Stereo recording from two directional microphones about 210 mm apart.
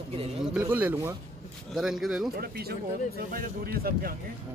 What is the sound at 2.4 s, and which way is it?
Speech, 45° right (ahead or behind).